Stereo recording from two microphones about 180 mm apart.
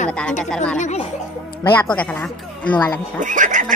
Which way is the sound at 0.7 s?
40° left (ahead or behind).